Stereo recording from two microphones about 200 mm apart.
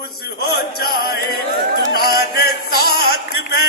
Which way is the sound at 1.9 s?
50° left (ahead or behind).